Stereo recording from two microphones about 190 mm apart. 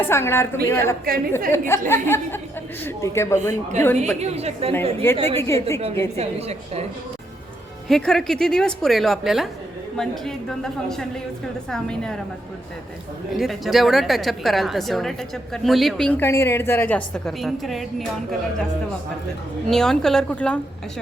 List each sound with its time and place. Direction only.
0.0 s speech: 15° left (ahead or behind)
1.0 s a woman's voice: 50° right (ahead or behind)
1.5 s speech: 15° left (ahead or behind)
3.5 s a woman's voice: 40° right (ahead or behind)
5.4 s speech: 15° left (ahead or behind)
6.1 s a woman's voice: 35° right (ahead or behind)
7.9 s a woman's voice: centre (ahead or behind)
13.3 s a woman's voice: centre (ahead or behind)
19.6 s a woman's voice: 5° left (ahead or behind)